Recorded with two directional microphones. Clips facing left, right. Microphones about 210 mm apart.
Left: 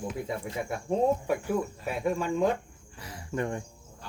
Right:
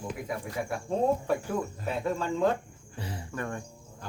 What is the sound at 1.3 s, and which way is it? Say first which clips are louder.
Speech: left 1 dB; 10° left (ahead or behind).